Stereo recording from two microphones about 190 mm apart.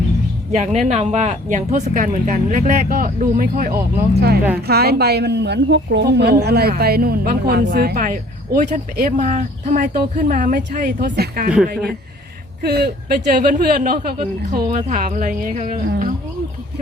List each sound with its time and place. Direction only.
0.5 s a woman's voice: 40° right (ahead or behind)